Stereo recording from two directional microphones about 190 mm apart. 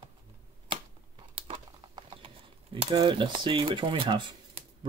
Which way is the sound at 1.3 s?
25° right (ahead or behind).